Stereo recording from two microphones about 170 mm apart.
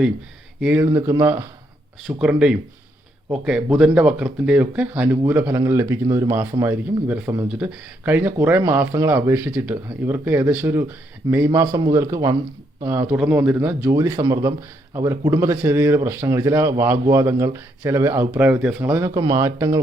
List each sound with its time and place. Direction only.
0.6 s a man's voice: 10° right (ahead or behind)